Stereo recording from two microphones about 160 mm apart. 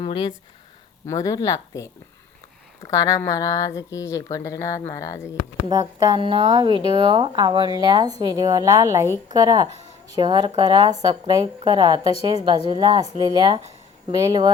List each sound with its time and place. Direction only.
0.0 s speech: 30° left (ahead or behind)
1.0 s a woman's voice: 20° left (ahead or behind)
5.6 s speech: 30° right (ahead or behind)